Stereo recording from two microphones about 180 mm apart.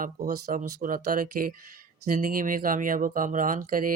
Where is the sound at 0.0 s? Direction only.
55° right (ahead or behind).